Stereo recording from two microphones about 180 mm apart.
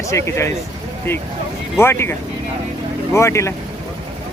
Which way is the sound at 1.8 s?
15° left (ahead or behind).